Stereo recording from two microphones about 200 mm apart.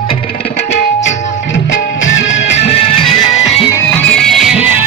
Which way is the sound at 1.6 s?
65° left (ahead or behind).